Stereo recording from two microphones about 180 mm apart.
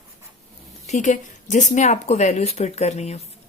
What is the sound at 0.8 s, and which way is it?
Speech, 40° left (ahead or behind).